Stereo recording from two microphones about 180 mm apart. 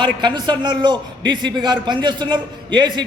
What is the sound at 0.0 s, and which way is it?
A man's voice, 25° right (ahead or behind).